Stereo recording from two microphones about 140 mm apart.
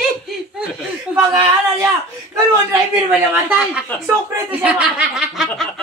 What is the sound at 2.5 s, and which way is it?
Speech, 15° right (ahead or behind).